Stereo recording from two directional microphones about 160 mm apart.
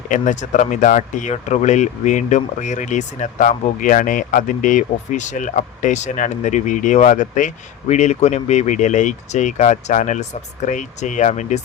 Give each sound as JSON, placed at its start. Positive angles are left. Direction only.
{"t": 0.1, "sound": "speech", "side_deg": 50}